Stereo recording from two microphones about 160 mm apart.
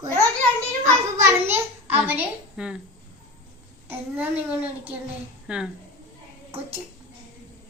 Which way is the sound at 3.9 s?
10° right (ahead or behind).